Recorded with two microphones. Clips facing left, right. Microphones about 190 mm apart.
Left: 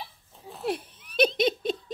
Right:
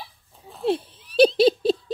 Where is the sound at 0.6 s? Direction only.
25° right (ahead or behind).